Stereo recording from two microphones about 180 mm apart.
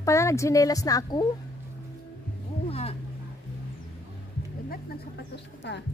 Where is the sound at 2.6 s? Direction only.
35° left (ahead or behind).